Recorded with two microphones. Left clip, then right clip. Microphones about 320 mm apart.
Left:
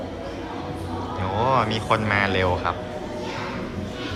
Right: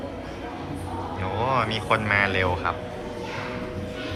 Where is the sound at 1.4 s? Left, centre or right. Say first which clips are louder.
Left 3 dB; centre.